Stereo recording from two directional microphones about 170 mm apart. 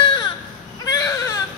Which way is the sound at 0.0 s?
30° left (ahead or behind).